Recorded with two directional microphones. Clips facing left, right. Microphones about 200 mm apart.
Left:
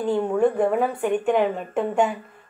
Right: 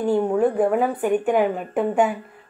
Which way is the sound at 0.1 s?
10° right (ahead or behind).